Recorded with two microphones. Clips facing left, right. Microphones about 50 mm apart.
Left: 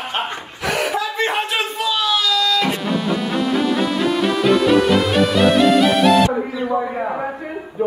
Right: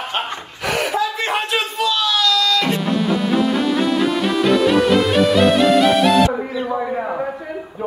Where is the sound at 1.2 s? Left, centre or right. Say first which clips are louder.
Even; centre.